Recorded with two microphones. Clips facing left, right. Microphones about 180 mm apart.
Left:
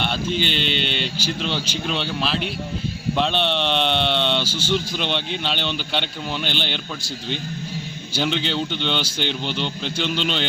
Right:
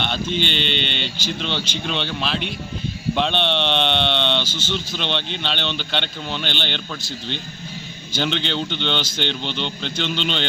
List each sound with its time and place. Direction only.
0.0 s speech: 5° left (ahead or behind)